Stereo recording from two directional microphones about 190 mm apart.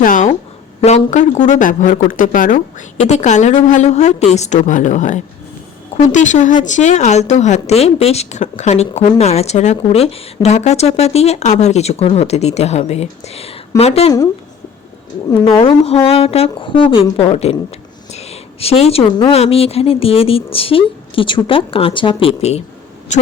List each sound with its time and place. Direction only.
0.0 s a sound: 45° left (ahead or behind)
0.8 s a woman's voice: 35° left (ahead or behind)
15.3 s a woman's voice: 25° left (ahead or behind)